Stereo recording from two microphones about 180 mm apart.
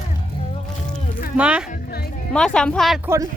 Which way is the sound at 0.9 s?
50° left (ahead or behind).